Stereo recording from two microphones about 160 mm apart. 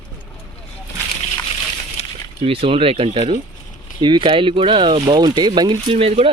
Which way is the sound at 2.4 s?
35° right (ahead or behind).